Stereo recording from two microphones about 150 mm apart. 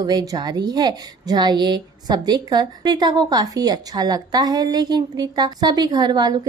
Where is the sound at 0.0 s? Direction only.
25° right (ahead or behind).